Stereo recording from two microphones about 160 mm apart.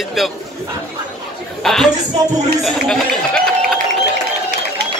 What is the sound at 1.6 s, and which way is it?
Speech, centre (ahead or behind).